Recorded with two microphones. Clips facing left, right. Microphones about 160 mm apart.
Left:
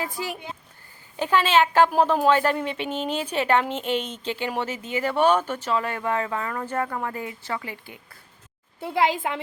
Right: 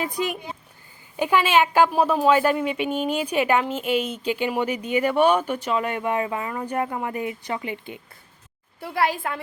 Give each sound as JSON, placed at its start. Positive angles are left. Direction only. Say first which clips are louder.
{"t": 0.0, "sound": "speech", "louder": "right 4 dB", "side_deg": -20}
{"t": 8.8, "sound": "a woman's voice", "louder": "left 1 dB", "side_deg": 20}